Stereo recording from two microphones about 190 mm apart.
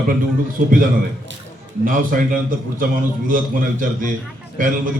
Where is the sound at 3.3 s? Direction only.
45° right (ahead or behind).